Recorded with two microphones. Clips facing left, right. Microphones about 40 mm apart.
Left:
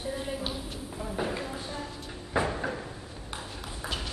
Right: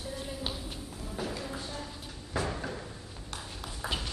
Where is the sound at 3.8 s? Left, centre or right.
Centre.